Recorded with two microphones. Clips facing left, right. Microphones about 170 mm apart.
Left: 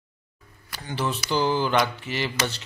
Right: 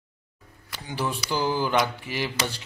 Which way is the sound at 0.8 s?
10° right (ahead or behind).